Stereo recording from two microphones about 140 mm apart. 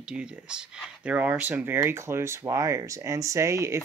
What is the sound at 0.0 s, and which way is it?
Speech, 5° right (ahead or behind).